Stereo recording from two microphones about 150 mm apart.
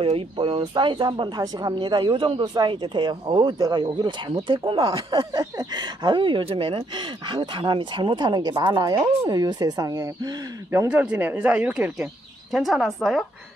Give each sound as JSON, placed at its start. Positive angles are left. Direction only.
{"t": 0.0, "sound": "speech", "side_deg": -35}
{"t": 10.9, "sound": "speech", "side_deg": -10}